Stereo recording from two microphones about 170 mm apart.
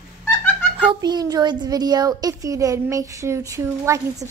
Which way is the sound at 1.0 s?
25° right (ahead or behind).